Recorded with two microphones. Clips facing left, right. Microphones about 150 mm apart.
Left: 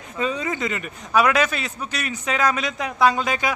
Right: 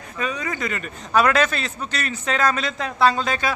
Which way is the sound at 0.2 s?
25° left (ahead or behind).